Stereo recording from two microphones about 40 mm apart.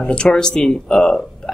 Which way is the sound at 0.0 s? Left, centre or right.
Left.